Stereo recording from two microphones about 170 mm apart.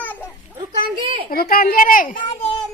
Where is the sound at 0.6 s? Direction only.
30° right (ahead or behind).